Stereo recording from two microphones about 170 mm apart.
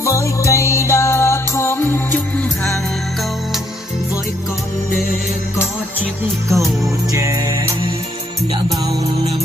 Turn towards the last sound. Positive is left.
turn(degrees=-20)  # may be behind; listen again after turning